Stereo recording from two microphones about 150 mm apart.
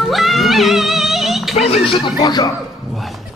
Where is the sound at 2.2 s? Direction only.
30° left (ahead or behind).